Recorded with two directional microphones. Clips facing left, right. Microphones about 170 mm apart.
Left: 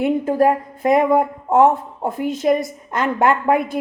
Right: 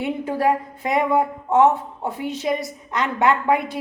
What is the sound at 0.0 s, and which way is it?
A woman's voice, 50° left (ahead or behind).